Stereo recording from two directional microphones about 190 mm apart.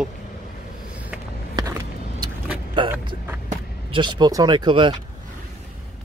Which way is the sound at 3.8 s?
25° right (ahead or behind).